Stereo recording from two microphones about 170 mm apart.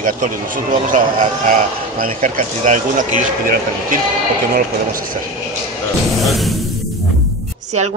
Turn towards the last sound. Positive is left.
turn(degrees=0)  # may be behind; listen again after turning